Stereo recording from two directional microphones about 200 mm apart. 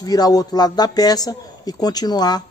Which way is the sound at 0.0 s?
20° left (ahead or behind).